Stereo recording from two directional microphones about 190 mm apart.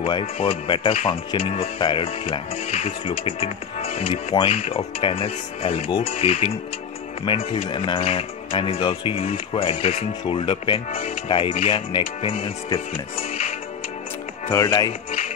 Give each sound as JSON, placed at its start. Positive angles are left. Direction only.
{"t": 0.0, "sound": "speech", "side_deg": 30}
{"t": 14.5, "sound": "speech", "side_deg": 15}